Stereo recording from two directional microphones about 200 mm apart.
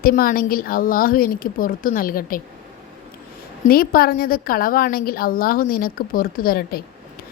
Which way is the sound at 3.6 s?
45° left (ahead or behind).